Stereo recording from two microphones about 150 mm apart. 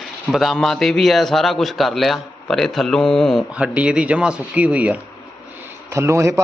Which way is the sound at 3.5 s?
10° right (ahead or behind).